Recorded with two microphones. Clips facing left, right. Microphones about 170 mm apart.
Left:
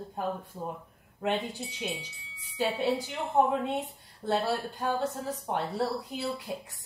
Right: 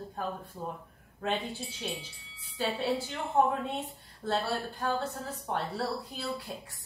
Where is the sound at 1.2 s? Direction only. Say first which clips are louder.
Left 2 dB; 20° left (ahead or behind).